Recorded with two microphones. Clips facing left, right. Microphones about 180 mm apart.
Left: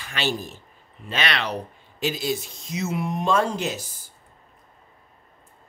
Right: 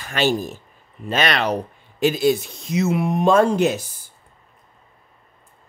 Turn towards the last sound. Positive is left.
turn(degrees=-55)  # may be behind; listen again after turning